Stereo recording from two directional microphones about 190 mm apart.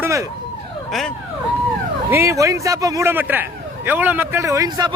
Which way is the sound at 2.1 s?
15° right (ahead or behind).